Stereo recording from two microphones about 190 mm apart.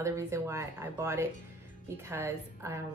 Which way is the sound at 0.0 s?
15° right (ahead or behind).